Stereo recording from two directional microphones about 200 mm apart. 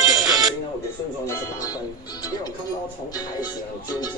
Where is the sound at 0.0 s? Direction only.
Centre (ahead or behind).